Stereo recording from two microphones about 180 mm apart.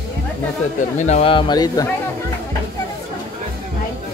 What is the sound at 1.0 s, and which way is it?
Speech, 40° left (ahead or behind).